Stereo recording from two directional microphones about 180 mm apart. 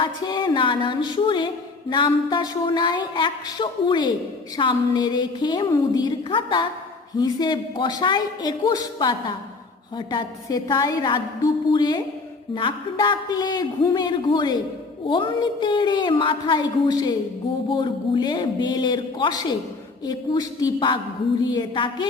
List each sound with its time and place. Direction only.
0.0 s a woman's voice: 25° left (ahead or behind)